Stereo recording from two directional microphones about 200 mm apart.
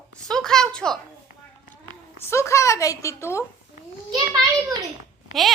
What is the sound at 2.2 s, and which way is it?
Speech, 15° left (ahead or behind).